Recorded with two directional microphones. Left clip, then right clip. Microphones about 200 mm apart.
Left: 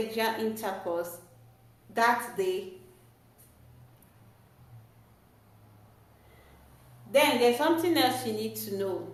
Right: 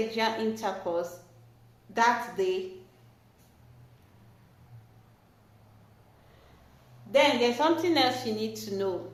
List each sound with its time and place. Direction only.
0.1 s a woman's voice: 25° right (ahead or behind)
7.1 s a woman's voice: 20° right (ahead or behind)